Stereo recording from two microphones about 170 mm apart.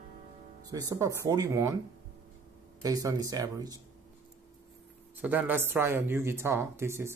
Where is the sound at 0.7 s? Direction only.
20° right (ahead or behind).